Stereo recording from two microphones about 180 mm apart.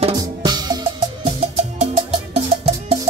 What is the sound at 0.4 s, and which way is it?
Music, 25° right (ahead or behind).